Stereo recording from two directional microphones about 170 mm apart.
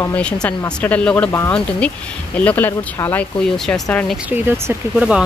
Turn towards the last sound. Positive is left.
turn(degrees=-10)  # may be behind; listen again after turning